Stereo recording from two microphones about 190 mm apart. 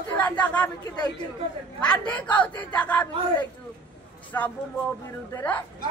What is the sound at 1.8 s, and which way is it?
Speech, 25° left (ahead or behind).